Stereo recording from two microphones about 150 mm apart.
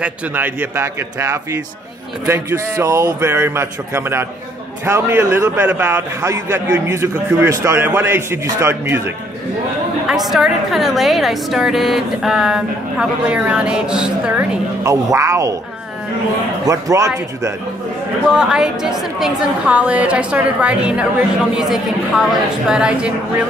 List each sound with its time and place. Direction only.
0.0 s a man's voice: 15° right (ahead or behind)
10.0 s a woman's voice: centre (ahead or behind)
14.8 s a man's voice: 20° right (ahead or behind)
16.6 s a man's voice: 20° right (ahead or behind)
18.2 s a woman's voice: 5° right (ahead or behind)